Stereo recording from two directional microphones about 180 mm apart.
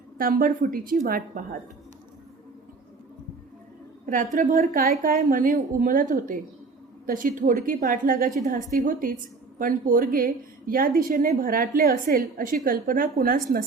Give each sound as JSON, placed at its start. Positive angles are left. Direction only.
{"t": 0.2, "sound": "a woman's voice", "side_deg": -50}
{"t": 4.0, "sound": "a woman's voice", "side_deg": -45}